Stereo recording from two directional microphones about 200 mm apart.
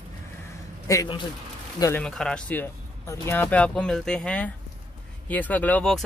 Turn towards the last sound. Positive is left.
turn(degrees=5)  # may be behind; listen again after turning